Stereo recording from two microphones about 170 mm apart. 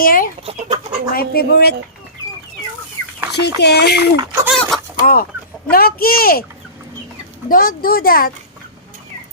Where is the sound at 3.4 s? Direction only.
75° left (ahead or behind).